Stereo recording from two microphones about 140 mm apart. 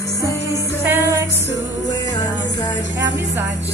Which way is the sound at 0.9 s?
15° right (ahead or behind).